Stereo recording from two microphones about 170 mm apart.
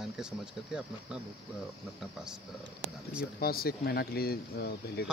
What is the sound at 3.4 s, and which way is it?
Speech, 65° left (ahead or behind).